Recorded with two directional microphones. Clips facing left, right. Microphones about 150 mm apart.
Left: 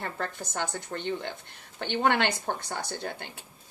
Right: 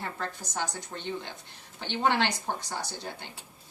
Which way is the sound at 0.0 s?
55° left (ahead or behind).